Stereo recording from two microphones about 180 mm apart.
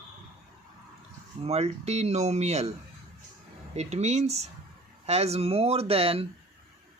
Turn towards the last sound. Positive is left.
turn(degrees=-30)  # may be behind; listen again after turning